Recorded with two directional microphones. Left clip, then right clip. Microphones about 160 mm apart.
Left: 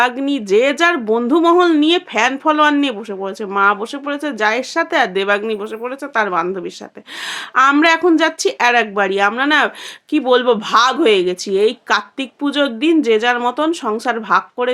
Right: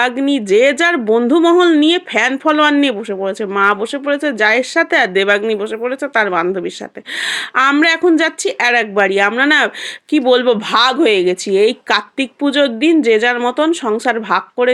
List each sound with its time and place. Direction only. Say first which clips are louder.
0.0 s speech: right 1 dB; 20° right (ahead or behind)